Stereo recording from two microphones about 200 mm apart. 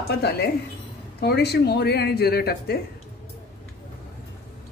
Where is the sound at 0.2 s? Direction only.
55° left (ahead or behind).